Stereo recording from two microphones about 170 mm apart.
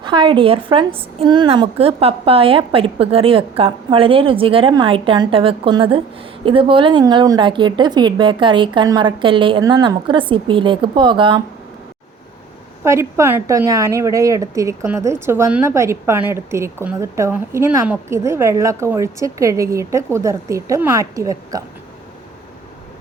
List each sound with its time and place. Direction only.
0.0 s a woman's voice: 25° right (ahead or behind)
12.8 s a woman's voice: 15° right (ahead or behind)